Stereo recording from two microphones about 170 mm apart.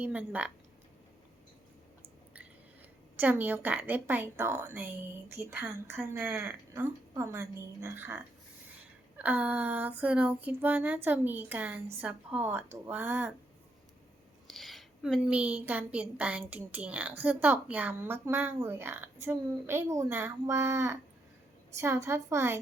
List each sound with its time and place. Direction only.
0.0 s a woman's voice: 10° right (ahead or behind)
3.2 s a woman's voice: 10° right (ahead or behind)
14.4 s a woman's voice: centre (ahead or behind); by 22.6 s 15° right (ahead or behind)